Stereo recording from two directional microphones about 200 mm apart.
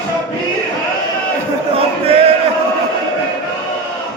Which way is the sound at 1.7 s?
30° right (ahead or behind).